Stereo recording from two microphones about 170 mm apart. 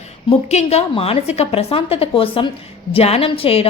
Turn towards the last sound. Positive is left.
turn(degrees=35)  # may be behind; listen again after turning